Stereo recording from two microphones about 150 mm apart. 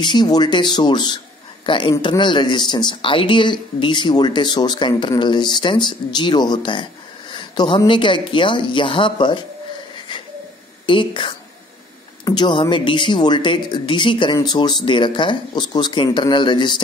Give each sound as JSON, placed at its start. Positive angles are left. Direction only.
{"t": 0.0, "sound": "speech", "side_deg": 30}
{"t": 10.9, "sound": "speech", "side_deg": 35}